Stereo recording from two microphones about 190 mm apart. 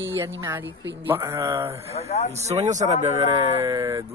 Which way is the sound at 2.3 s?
35° right (ahead or behind).